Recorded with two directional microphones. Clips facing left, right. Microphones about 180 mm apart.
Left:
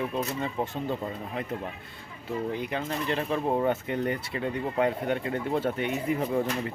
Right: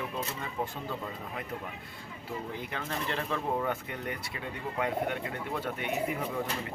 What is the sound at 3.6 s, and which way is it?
Speech, 30° left (ahead or behind).